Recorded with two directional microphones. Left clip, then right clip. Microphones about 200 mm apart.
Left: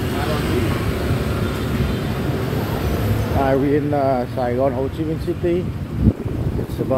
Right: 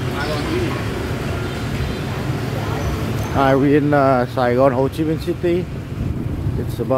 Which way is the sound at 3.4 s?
20° right (ahead or behind).